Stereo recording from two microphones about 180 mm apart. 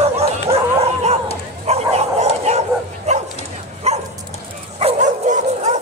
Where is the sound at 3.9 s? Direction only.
35° right (ahead or behind).